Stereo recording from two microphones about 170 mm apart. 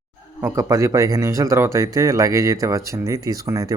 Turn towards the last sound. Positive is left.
turn(degrees=-20)  # may be behind; listen again after turning